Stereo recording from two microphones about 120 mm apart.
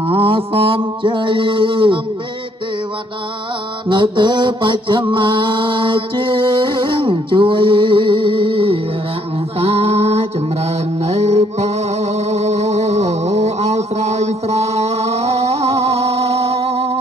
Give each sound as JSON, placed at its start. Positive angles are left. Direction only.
{"t": 0.1, "sound": "mantra", "side_deg": -45}
{"t": 3.9, "sound": "mantra", "side_deg": -40}
{"t": 9.6, "sound": "music", "side_deg": -60}
{"t": 12.3, "sound": "a sound", "side_deg": -65}